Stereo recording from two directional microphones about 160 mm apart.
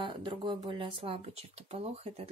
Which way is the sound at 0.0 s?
30° right (ahead or behind).